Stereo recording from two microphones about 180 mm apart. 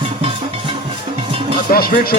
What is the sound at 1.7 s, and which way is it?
Speech, 55° left (ahead or behind).